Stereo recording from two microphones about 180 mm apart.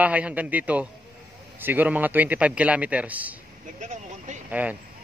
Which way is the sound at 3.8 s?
40° right (ahead or behind).